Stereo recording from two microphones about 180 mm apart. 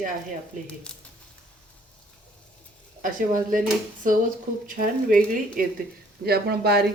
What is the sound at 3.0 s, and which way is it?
Speech, 50° right (ahead or behind).